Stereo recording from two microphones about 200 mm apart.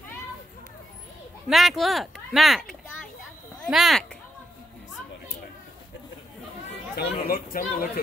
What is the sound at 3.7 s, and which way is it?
Speech, centre (ahead or behind).